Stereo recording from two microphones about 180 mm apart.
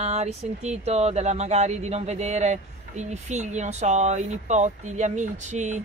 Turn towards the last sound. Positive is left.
turn(degrees=-40)  # may be behind; listen again after turning